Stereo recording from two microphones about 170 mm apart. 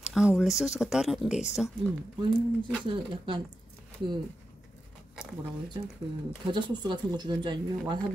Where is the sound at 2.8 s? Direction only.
30° right (ahead or behind).